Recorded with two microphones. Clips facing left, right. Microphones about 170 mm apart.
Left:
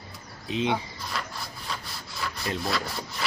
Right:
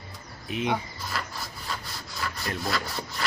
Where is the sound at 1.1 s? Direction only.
Centre (ahead or behind).